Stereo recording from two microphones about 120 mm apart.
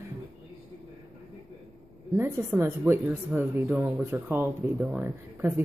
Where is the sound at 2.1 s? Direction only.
20° right (ahead or behind).